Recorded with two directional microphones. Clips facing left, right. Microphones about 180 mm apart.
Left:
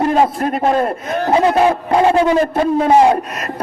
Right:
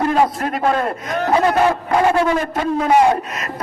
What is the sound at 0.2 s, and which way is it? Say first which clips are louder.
A man's voice: left 2 dB; 25° left (ahead or behind).